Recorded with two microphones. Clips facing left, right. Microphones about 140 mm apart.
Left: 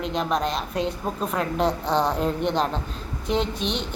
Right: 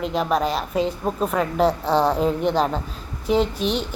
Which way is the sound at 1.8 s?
35° right (ahead or behind).